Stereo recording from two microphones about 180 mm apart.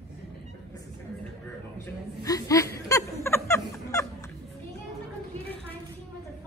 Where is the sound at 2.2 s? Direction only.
20° left (ahead or behind).